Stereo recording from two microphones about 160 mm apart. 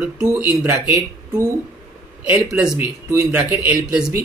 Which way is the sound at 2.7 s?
15° right (ahead or behind).